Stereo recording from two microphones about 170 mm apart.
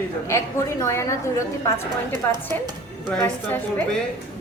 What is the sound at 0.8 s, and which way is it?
Speech, 15° left (ahead or behind).